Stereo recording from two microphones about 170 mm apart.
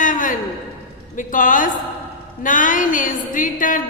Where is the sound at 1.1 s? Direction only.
50° left (ahead or behind).